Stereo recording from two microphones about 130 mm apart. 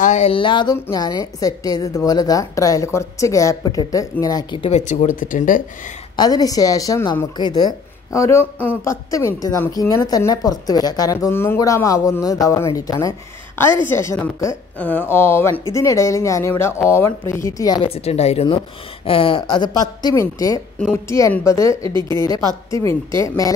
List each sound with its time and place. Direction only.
0.0 s a sound: 65° left (ahead or behind)
0.3 s speech: 40° left (ahead or behind)
0.7 s a woman's voice: 25° left (ahead or behind)
4.6 s speech: 65° left (ahead or behind); by 5.6 s 90° left
6.1 s a woman's voice: 30° left (ahead or behind)
7.3 s a woman's voice: 35° left (ahead or behind); by 8.9 s 15° left (ahead or behind)
9.1 s a woman's voice: 25° left (ahead or behind)
14.8 s a woman's voice: 10° left (ahead or behind); by 17.8 s 30° left (ahead or behind)
17.8 s a woman's voice: 50° left (ahead or behind); by 23.5 s 25° left (ahead or behind)